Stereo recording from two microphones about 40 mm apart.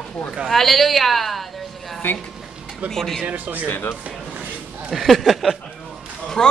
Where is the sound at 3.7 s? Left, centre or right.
Left.